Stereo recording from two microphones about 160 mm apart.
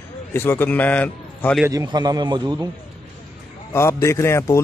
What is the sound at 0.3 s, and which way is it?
A man's voice, 15° left (ahead or behind).